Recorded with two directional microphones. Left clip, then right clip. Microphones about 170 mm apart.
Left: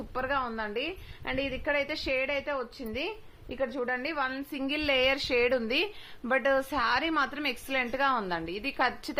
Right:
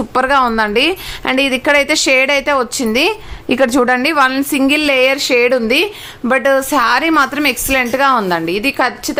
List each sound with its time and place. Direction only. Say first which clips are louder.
0.1 s a woman's voice: right 19 dB; 30° right (ahead or behind)
4.6 s speech: right 14 dB; 10° right (ahead or behind)